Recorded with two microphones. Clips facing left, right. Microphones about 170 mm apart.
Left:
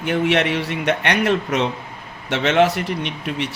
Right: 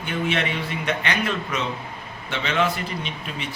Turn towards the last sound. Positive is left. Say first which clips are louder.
# left 6 dB
turn(degrees=75)  # may be behind; listen again after turning